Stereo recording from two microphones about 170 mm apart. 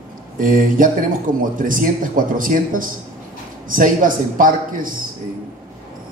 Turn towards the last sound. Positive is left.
turn(degrees=-55)  # may be behind; listen again after turning